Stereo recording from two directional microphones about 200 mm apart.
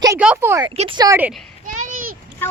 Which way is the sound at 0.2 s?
10° right (ahead or behind).